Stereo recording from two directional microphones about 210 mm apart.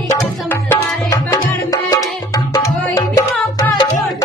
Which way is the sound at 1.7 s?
15° left (ahead or behind).